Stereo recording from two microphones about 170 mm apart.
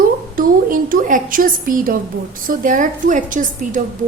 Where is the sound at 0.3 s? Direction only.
55° right (ahead or behind).